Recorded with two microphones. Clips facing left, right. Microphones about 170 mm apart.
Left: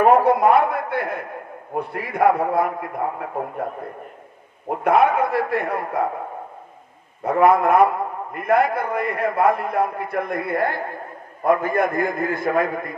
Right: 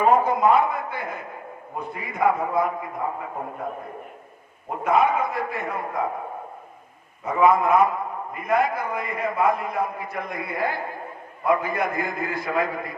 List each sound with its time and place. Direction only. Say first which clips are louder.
0.0 s a man's voice: left 4 dB; 65° left (ahead or behind)
4.8 s a man's voice: left 3 dB; 65° left (ahead or behind)
7.3 s a man's voice: left 3 dB; 65° left (ahead or behind)